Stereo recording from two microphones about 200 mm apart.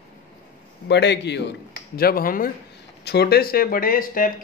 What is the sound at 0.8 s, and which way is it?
A woman's voice, 60° left (ahead or behind).